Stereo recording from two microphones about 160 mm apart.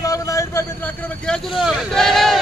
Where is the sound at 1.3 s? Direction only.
5° left (ahead or behind).